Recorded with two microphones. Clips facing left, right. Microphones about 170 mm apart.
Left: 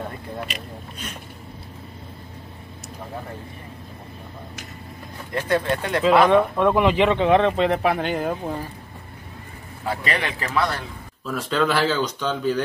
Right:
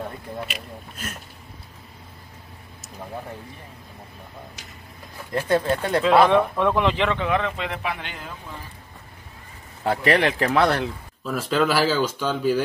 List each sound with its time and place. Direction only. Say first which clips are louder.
0.5 s speech: left 2 dB; 5° right (ahead or behind)
5.5 s speech: right 1 dB; 30° right (ahead or behind)
6.2 s speech: left 2 dB; 5° left (ahead or behind)
7.2 s speech: left 7 dB; 30° left (ahead or behind); by 8.5 s 50° left (ahead or behind)
9.8 s speech: right 6 dB; 70° right (ahead or behind)
11.2 s speech: right 1 dB; centre (ahead or behind)